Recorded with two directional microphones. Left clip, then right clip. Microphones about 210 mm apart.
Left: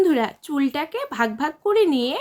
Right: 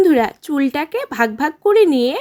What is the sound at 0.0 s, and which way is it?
Speech, 30° right (ahead or behind).